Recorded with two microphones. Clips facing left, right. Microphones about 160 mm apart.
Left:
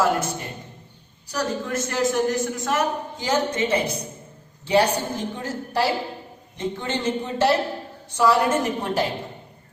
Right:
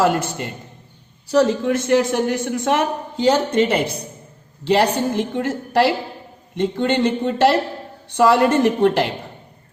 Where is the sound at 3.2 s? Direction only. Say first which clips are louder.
Right 7 dB; 75° right (ahead or behind).